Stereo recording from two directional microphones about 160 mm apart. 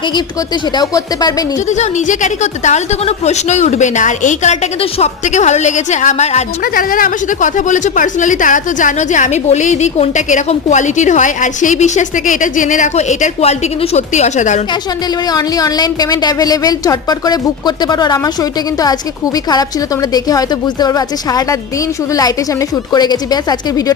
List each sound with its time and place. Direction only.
0.8 s a woman's voice: 25° left (ahead or behind)
1.7 s speech: 50° left (ahead or behind)
6.7 s speech: 60° left (ahead or behind)
15.3 s a woman's voice: 25° left (ahead or behind)
19.5 s a woman's voice: 25° left (ahead or behind)
22.7 s a woman's voice: 25° left (ahead or behind)